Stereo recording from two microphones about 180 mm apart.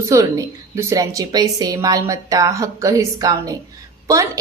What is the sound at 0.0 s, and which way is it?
A woman's voice, 20° right (ahead or behind).